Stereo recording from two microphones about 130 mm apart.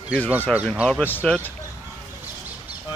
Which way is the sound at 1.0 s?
10° left (ahead or behind).